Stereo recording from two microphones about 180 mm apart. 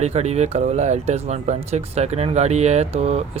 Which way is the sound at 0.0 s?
35° right (ahead or behind).